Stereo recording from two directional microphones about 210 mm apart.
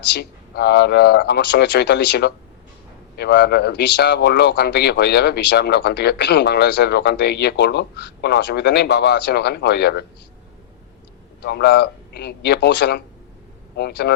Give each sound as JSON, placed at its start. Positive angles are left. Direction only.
{"t": 0.1, "sound": "speech", "side_deg": 50}
{"t": 11.4, "sound": "speech", "side_deg": 50}